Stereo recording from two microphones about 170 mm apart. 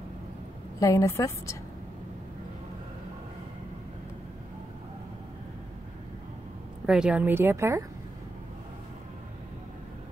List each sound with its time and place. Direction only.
0.7 s a woman's voice: 20° left (ahead or behind)
6.9 s a woman's voice: 5° right (ahead or behind)